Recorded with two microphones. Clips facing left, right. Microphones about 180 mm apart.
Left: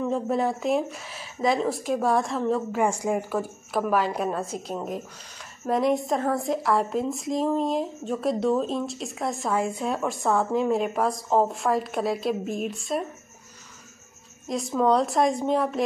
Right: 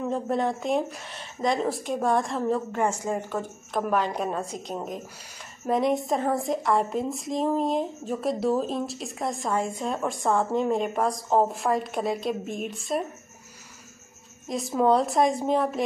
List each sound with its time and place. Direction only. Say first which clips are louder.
0.1 s speech: left 1 dB; 5° left (ahead or behind)
14.8 s speech: even; centre (ahead or behind)